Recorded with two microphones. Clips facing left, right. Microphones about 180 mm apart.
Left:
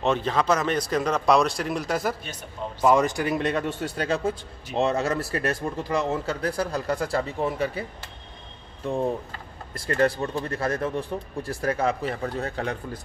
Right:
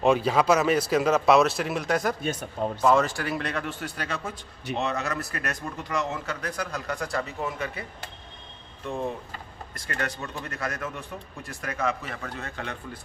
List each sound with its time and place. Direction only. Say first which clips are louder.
0.0 s speech: right 2 dB; 10° right (ahead or behind)
2.2 s speech: right 6 dB; 50° right (ahead or behind)
2.8 s speech: left 2 dB; 15° left (ahead or behind); by 7.8 s 30° left (ahead or behind)
9.8 s speech: left 10 dB; 30° left (ahead or behind)